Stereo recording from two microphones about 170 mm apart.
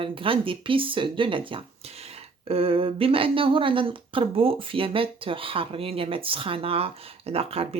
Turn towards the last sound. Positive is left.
turn(degrees=-35)  # may be behind; listen again after turning